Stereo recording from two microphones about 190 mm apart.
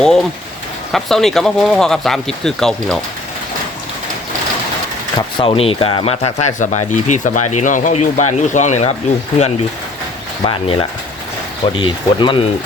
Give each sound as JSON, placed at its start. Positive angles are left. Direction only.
{"t": 0.0, "sound": "speech", "side_deg": 5}
{"t": 5.4, "sound": "speech", "side_deg": 30}
{"t": 10.4, "sound": "speech", "side_deg": 25}